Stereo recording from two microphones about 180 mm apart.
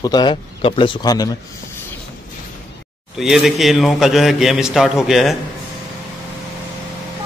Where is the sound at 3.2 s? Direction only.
Centre (ahead or behind).